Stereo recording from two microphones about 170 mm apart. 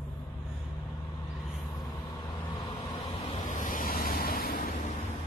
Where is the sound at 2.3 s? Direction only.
35° left (ahead or behind).